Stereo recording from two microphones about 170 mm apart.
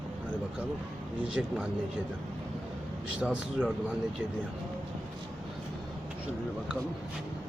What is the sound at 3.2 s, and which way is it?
Speech, 5° right (ahead or behind).